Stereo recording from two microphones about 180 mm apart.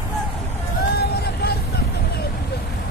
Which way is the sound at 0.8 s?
60° left (ahead or behind).